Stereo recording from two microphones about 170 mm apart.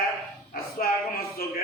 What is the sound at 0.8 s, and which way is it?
Speech, 55° left (ahead or behind).